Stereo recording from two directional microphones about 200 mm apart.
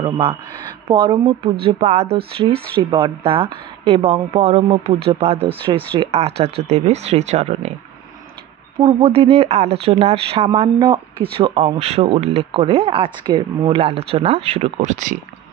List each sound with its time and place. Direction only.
0.0 s speech: 25° right (ahead or behind)
8.7 s speech: 25° right (ahead or behind)